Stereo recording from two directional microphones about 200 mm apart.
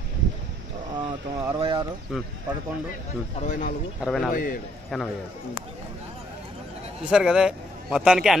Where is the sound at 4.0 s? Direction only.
Centre (ahead or behind).